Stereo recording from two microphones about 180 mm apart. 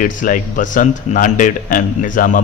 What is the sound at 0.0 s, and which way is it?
A man's voice, 50° left (ahead or behind).